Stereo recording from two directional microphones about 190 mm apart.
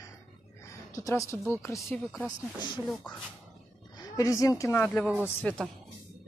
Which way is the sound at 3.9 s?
15° left (ahead or behind).